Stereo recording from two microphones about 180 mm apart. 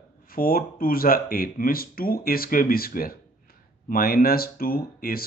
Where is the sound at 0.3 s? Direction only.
55° left (ahead or behind).